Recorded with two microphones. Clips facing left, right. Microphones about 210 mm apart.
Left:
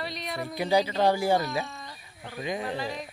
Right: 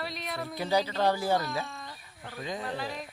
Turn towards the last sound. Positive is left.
turn(degrees=0)  # may be behind; listen again after turning